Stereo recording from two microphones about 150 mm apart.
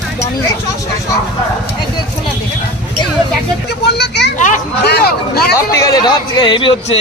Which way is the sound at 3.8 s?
90° left.